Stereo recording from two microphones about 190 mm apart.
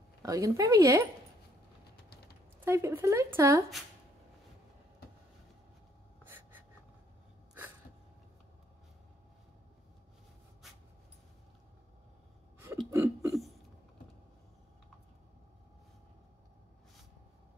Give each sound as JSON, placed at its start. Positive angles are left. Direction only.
{"t": 0.2, "sound": "speech", "side_deg": -20}
{"t": 2.6, "sound": "speech", "side_deg": -15}
{"t": 6.2, "sound": "gasp", "side_deg": -10}
{"t": 12.9, "sound": "a sound", "side_deg": -15}